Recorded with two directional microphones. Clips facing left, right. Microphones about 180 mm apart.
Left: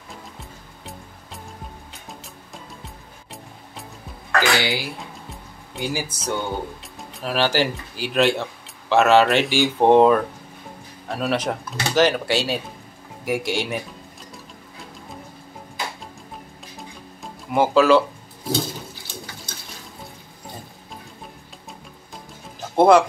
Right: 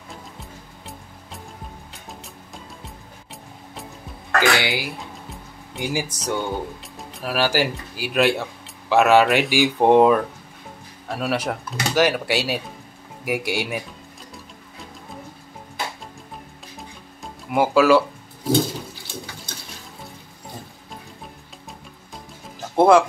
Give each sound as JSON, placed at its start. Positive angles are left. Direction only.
{"t": 0.1, "sound": "music", "side_deg": 0}
{"t": 2.5, "sound": "music", "side_deg": 0}
{"t": 4.4, "sound": "speech", "side_deg": -20}
{"t": 5.7, "sound": "speech", "side_deg": 0}
{"t": 7.2, "sound": "speech", "side_deg": -10}
{"t": 16.7, "sound": "music", "side_deg": 0}
{"t": 22.8, "sound": "speech", "side_deg": -5}